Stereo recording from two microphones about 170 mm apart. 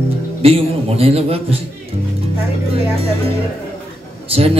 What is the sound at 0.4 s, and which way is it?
A man's voice, 35° right (ahead or behind).